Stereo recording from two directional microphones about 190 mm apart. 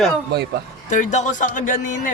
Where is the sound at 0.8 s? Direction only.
40° left (ahead or behind).